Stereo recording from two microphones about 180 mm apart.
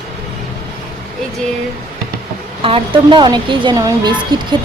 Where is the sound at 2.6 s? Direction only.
30° right (ahead or behind).